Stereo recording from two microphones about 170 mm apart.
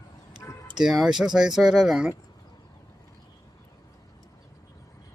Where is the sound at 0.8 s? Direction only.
Centre (ahead or behind).